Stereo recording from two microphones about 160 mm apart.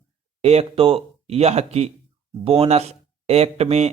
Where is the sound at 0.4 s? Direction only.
40° right (ahead or behind).